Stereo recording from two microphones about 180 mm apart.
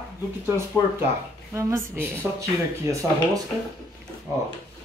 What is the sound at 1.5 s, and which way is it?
Speech, 15° right (ahead or behind).